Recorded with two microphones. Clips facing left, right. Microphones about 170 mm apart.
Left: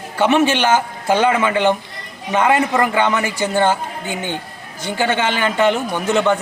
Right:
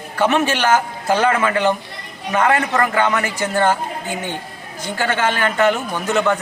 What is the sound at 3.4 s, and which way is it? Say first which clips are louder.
Speech: left 1 dB; 25° left (ahead or behind).